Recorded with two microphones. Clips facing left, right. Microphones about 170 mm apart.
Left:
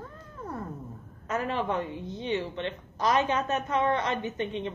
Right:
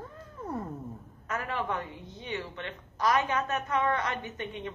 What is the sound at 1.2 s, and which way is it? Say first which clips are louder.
A woman's voice: left 4 dB; 25° left (ahead or behind).